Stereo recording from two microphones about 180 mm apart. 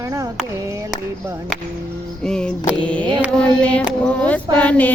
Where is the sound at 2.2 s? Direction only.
5° left (ahead or behind).